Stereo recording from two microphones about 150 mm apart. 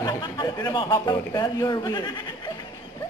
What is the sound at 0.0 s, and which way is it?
A man's voice, 25° left (ahead or behind).